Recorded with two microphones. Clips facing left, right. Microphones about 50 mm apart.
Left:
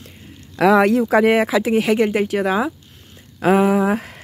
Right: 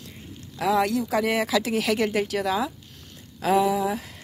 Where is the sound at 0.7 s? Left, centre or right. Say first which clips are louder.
Left 8 dB; left.